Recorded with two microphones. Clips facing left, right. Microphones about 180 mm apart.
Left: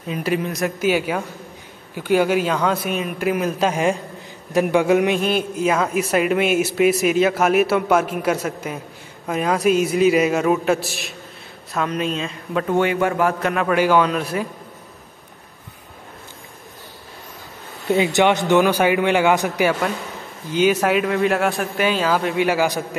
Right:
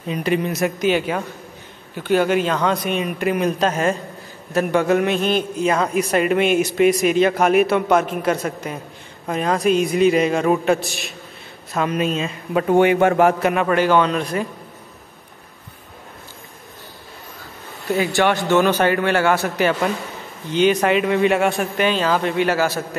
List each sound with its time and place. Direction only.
0.1 s a man's voice: centre (ahead or behind)
12.6 s a man's voice: 15° right (ahead or behind)
13.0 s a man's voice: 60° right (ahead or behind)
13.4 s a man's voice: 5° right (ahead or behind)
13.7 s a man's voice: 10° left (ahead or behind)
17.8 s a man's voice: 20° left (ahead or behind)